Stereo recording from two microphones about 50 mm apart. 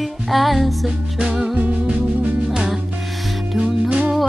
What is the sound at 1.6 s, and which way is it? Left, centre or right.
Music, right.